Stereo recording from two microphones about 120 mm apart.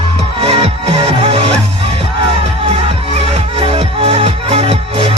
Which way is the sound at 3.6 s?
55° right (ahead or behind).